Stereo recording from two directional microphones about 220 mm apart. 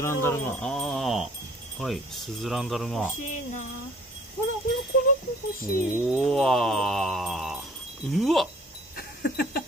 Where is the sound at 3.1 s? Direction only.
35° left (ahead or behind).